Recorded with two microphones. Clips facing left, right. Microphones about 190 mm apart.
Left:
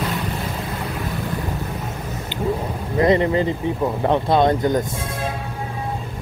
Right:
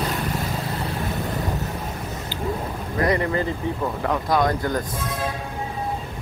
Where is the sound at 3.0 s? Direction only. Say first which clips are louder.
Left 5 dB; 20° left (ahead or behind).